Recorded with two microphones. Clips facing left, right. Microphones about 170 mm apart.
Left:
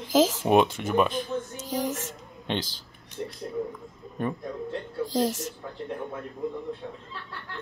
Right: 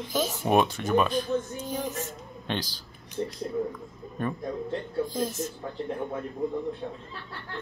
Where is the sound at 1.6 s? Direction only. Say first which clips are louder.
Left 2 dB; 85° left.